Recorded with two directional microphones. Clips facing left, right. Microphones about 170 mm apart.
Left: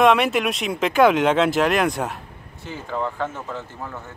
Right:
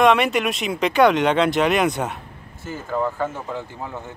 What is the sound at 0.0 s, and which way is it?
Speech, centre (ahead or behind).